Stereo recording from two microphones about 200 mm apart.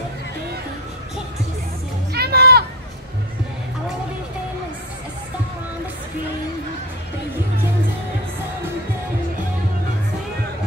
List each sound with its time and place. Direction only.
2.1 s children playing: 50° right (ahead or behind)